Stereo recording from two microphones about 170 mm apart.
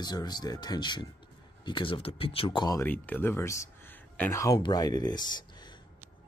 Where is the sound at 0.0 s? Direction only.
25° left (ahead or behind).